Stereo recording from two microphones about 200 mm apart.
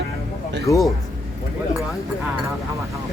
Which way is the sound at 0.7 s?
15° left (ahead or behind).